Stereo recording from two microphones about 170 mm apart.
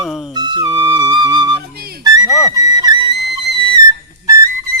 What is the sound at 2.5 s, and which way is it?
Flute, 25° right (ahead or behind).